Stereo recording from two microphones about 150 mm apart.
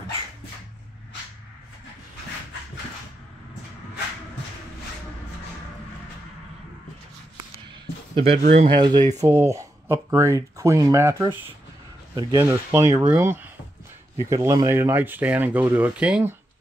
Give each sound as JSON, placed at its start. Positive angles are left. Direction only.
{"t": 8.1, "sound": "speech", "side_deg": -40}
{"t": 8.6, "sound": "speech", "side_deg": -30}
{"t": 12.2, "sound": "speech", "side_deg": -30}
{"t": 12.4, "sound": "speech", "side_deg": -15}